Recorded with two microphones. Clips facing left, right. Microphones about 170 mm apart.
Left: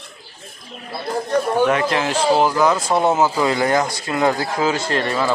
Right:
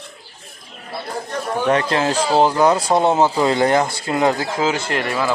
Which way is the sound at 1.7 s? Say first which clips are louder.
Right 1 dB; 30° right (ahead or behind).